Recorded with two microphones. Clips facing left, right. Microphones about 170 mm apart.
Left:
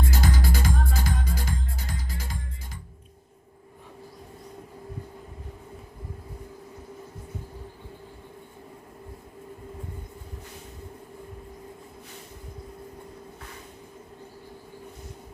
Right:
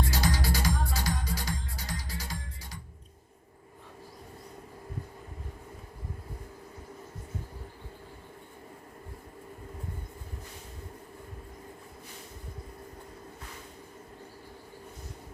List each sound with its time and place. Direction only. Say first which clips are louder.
0.1 s music: left 2 dB; 55° left (ahead or behind)